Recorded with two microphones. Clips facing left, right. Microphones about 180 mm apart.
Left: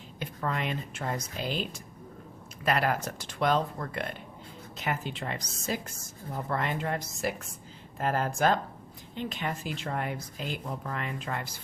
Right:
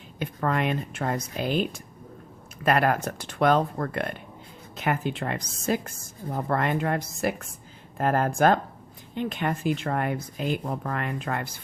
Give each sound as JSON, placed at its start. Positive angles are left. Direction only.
{"t": 0.2, "sound": "speech", "side_deg": -55}